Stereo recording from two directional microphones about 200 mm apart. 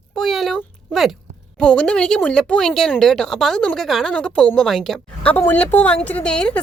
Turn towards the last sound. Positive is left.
turn(degrees=5)  # may be behind; listen again after turning